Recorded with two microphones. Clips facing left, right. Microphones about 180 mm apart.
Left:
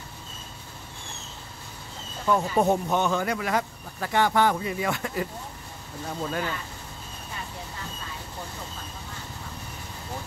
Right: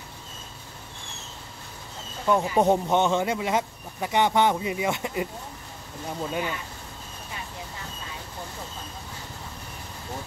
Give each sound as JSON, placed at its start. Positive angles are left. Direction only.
{"t": 2.2, "sound": "speech", "side_deg": -15}
{"t": 2.6, "sound": "a man's voice", "side_deg": -25}